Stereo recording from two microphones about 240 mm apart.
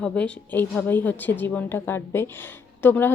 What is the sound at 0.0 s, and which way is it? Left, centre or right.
Speech, centre.